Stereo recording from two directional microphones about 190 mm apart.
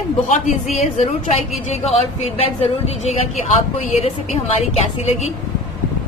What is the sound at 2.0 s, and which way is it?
A woman's voice, 30° left (ahead or behind).